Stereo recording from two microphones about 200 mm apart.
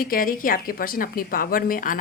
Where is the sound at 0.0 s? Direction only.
45° left (ahead or behind).